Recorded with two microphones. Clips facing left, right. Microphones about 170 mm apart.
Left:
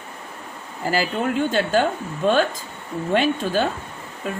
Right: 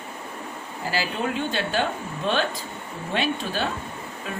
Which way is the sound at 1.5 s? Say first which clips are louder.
Left 6 dB; 45° left (ahead or behind).